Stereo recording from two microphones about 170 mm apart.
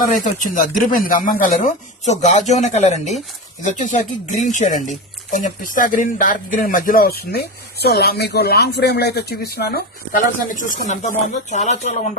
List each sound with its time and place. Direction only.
0.1 s speech: 50° left (ahead or behind)